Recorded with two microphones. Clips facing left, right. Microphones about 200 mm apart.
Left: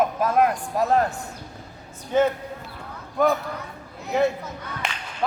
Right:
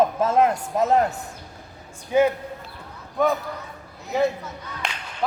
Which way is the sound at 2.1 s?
10° right (ahead or behind).